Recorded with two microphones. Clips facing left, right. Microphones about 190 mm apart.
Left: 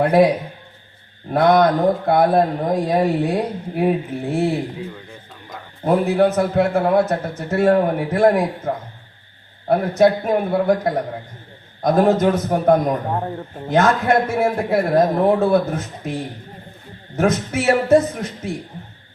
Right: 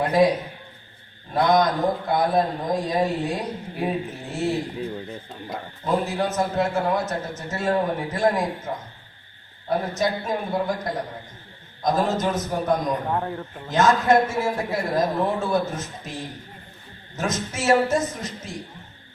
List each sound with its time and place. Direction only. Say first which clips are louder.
0.0 s a man's voice: left 5 dB; 60° left (ahead or behind)
1.3 s a man's voice: left 5 dB; 60° left (ahead or behind)
5.8 s a man's voice: left 8 dB; 60° left (ahead or behind)
13.1 s speech: left 2 dB; 20° left (ahead or behind)
13.7 s a man's voice: left 2 dB; 60° left (ahead or behind)
17.2 s a man's voice: left 8 dB; 60° left (ahead or behind)